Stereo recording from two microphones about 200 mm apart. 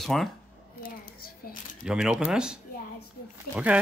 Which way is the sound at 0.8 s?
50° left (ahead or behind).